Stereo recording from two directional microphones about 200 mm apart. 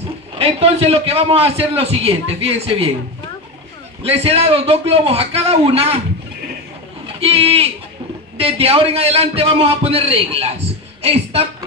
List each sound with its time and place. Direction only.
0.4 s a man's voice: 30° right (ahead or behind)
4.0 s a man's voice: 30° right (ahead or behind)
7.2 s a man's voice: 30° right (ahead or behind)